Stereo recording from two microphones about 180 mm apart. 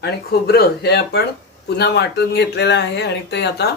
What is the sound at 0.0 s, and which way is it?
Speech, 60° left (ahead or behind).